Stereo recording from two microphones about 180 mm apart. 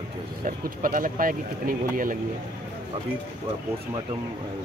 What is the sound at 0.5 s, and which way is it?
Speech, 50° right (ahead or behind).